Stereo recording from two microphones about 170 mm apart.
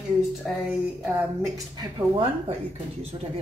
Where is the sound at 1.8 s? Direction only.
30° right (ahead or behind).